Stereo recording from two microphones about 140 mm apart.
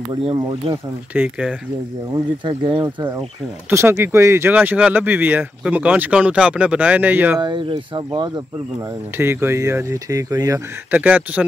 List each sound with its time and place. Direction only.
0.1 s speech: 35° right (ahead or behind)
1.1 s speech: 10° right (ahead or behind)
2.4 s speech: 35° right (ahead or behind)
3.7 s speech: 20° right (ahead or behind)
7.3 s speech: 35° right (ahead or behind)
9.1 s speech: 15° right (ahead or behind)
10.9 s speech: 10° right (ahead or behind)